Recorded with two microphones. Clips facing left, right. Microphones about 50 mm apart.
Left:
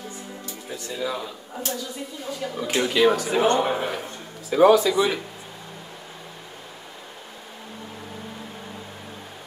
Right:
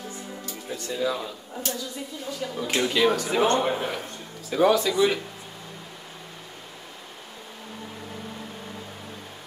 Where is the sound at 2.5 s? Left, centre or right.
Centre.